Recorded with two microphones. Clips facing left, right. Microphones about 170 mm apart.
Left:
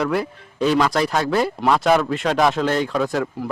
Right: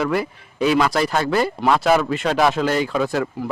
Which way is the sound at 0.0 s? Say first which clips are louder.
Even; 5° right (ahead or behind).